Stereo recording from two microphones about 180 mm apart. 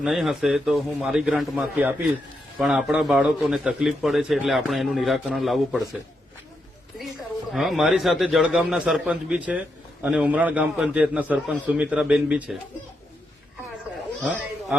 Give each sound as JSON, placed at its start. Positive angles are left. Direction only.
{"t": 0.0, "sound": "a man's voice", "side_deg": 0}
{"t": 7.5, "sound": "a man's voice", "side_deg": 0}
{"t": 14.2, "sound": "speech", "side_deg": -5}